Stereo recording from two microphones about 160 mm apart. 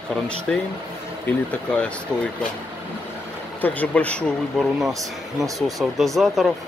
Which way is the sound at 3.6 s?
10° left (ahead or behind).